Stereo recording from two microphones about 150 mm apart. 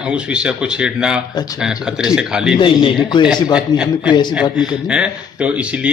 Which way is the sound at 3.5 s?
5° right (ahead or behind).